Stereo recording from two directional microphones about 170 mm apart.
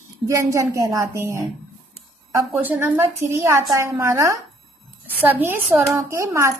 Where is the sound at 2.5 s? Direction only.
10° right (ahead or behind).